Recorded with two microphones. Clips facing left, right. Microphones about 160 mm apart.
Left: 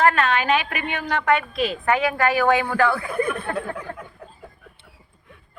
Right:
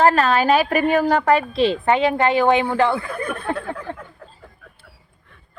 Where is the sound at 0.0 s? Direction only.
35° right (ahead or behind).